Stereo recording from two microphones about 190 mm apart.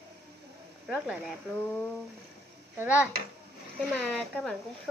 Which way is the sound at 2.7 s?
5° right (ahead or behind).